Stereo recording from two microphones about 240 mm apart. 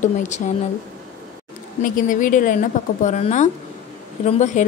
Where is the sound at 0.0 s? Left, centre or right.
Left.